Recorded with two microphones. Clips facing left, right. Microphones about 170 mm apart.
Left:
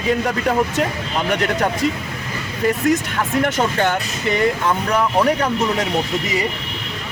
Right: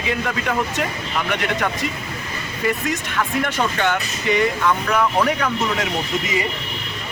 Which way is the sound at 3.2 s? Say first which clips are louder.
Left 3 dB; 40° left (ahead or behind).